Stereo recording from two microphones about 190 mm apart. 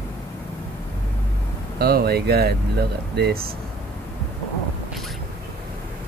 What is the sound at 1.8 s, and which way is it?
Speech, 55° right (ahead or behind).